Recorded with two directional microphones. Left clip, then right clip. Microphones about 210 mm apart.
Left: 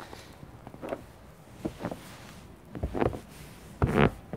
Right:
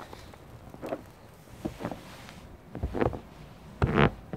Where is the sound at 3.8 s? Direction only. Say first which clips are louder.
Even; centre (ahead or behind).